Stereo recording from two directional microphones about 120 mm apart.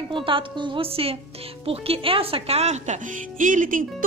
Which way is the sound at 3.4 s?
90° right.